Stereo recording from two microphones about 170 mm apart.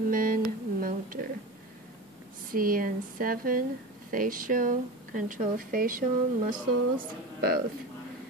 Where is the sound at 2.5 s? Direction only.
55° right (ahead or behind).